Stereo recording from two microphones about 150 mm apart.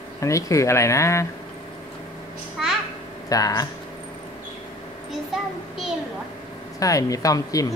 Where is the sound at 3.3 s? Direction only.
25° left (ahead or behind).